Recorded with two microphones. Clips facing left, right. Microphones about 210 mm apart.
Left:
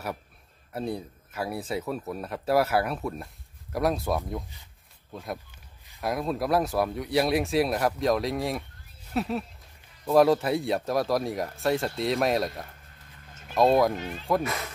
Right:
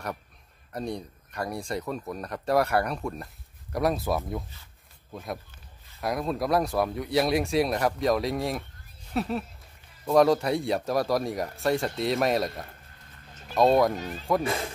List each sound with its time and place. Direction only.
0.7 s speech: 5° left (ahead or behind)
5.9 s speech: centre (ahead or behind)
13.9 s speech: 40° right (ahead or behind)